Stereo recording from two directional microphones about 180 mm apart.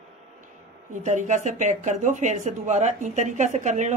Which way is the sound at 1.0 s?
40° right (ahead or behind).